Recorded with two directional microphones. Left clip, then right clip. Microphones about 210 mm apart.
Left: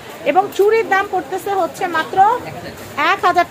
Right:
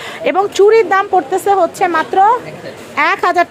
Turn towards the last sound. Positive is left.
turn(degrees=-40)  # may be behind; listen again after turning